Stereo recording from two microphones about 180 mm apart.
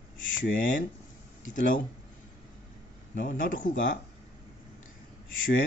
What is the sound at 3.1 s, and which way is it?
Speech, 50° left (ahead or behind).